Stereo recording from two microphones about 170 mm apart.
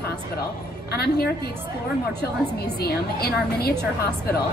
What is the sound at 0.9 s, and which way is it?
Speech, 70° left (ahead or behind).